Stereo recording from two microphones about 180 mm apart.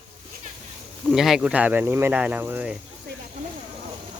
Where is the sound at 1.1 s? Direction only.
Centre (ahead or behind).